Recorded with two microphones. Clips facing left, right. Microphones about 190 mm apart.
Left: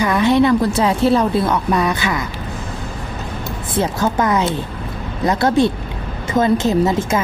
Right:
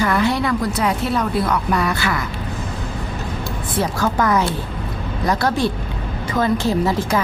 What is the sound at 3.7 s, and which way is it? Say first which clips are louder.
A woman's voice: left 2 dB; 20° left (ahead or behind).